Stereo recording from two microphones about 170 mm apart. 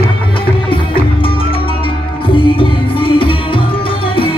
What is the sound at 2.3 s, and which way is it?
Music, 30° left (ahead or behind).